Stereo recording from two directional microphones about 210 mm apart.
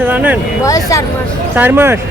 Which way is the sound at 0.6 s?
15° left (ahead or behind).